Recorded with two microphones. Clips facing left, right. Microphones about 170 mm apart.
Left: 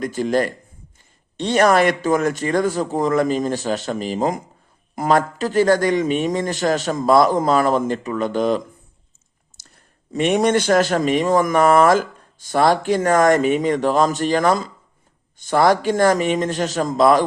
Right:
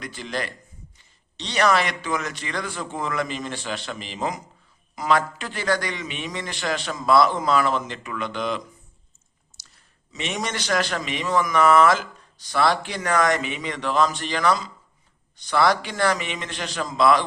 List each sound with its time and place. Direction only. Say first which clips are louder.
0.0 s a man's voice: left 11 dB; 45° left (ahead or behind)
9.6 s a man's voice: left 6 dB; 50° left (ahead or behind)